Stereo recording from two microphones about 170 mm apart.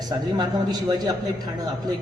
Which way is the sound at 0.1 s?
25° right (ahead or behind).